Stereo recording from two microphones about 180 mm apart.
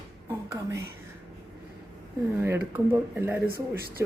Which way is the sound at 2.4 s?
15° right (ahead or behind).